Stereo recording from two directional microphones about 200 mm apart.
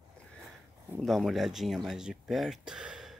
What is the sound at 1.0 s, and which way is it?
Speech, centre (ahead or behind).